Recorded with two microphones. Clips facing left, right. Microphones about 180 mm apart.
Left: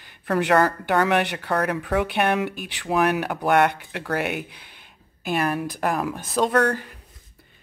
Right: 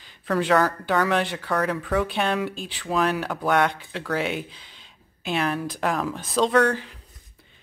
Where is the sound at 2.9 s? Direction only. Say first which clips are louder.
Left 2 dB; 15° left (ahead or behind).